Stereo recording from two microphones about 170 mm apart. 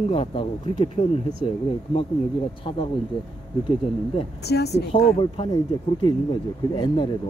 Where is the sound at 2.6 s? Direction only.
35° left (ahead or behind).